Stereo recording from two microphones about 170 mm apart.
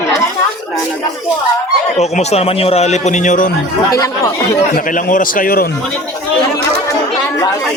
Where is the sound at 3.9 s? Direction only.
20° left (ahead or behind).